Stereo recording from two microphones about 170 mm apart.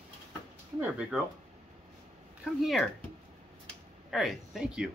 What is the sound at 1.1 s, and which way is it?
Speech, 5° right (ahead or behind).